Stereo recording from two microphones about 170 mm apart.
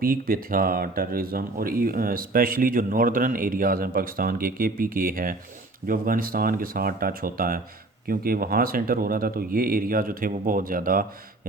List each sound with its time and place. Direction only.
0.0 s speech: 60° right (ahead or behind)